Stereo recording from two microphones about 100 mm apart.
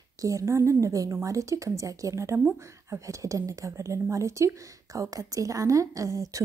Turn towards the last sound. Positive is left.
turn(degrees=-35)  # may be behind; listen again after turning